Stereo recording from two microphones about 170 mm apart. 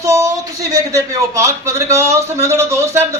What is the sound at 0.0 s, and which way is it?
Speech, 20° right (ahead or behind).